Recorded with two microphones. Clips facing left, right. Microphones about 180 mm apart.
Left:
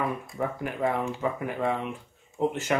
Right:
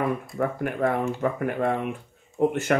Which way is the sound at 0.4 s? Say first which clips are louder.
Right 3 dB; 55° right (ahead or behind).